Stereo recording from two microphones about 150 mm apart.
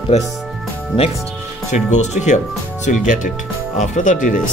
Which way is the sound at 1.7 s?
50° left (ahead or behind).